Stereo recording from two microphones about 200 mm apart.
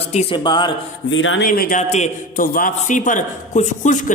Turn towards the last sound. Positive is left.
turn(degrees=40)  # may be behind; listen again after turning